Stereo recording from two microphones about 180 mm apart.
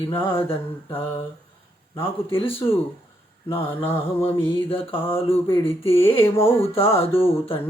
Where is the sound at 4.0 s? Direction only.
30° left (ahead or behind).